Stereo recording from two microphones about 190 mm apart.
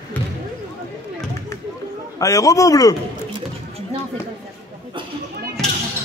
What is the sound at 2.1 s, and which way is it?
Speech, 15° left (ahead or behind).